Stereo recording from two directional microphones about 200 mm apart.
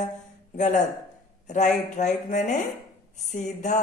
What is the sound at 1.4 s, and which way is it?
Speech, 35° left (ahead or behind).